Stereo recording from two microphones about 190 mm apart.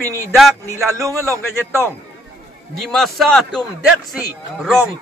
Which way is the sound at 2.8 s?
Centre (ahead or behind).